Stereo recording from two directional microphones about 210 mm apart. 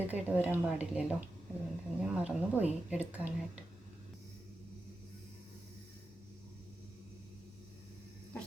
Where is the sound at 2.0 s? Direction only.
5° right (ahead or behind).